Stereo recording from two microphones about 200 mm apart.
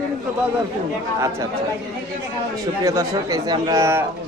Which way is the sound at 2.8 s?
15° right (ahead or behind).